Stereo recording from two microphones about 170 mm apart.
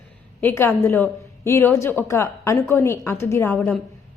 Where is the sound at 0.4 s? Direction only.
15° left (ahead or behind).